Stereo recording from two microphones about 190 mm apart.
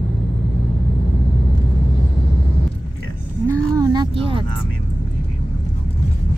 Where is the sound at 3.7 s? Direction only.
20° right (ahead or behind).